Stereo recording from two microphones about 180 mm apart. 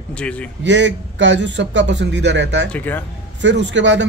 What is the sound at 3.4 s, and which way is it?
Speech, 80° right.